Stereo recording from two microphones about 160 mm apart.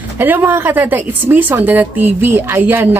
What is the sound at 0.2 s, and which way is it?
A woman's voice, 10° right (ahead or behind).